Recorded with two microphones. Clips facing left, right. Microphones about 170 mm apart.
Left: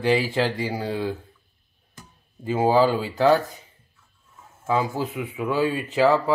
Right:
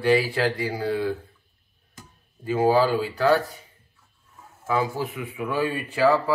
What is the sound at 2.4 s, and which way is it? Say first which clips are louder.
Speech: left 1 dB; 20° left (ahead or behind).